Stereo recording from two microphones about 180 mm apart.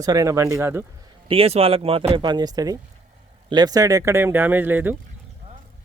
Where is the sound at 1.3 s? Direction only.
30° right (ahead or behind); by 5.0 s 10° right (ahead or behind).